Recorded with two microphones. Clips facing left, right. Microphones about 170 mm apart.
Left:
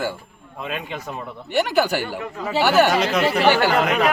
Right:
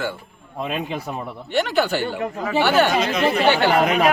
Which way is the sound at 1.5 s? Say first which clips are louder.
Left 1 dB; 10° left (ahead or behind).